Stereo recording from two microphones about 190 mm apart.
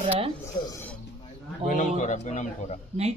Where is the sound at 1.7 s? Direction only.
40° left (ahead or behind).